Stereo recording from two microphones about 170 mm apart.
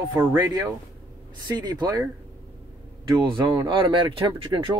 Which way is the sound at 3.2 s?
25° right (ahead or behind).